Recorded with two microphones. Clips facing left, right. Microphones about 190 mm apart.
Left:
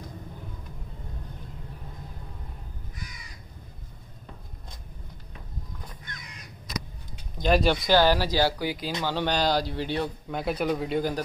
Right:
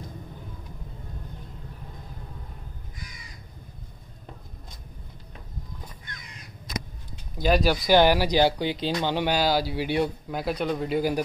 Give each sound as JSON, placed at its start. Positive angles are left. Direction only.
{"t": 7.3, "sound": "speech", "side_deg": -5}
{"t": 7.9, "sound": "speech", "side_deg": -15}
{"t": 9.0, "sound": "speech", "side_deg": -15}
{"t": 10.4, "sound": "speech", "side_deg": 5}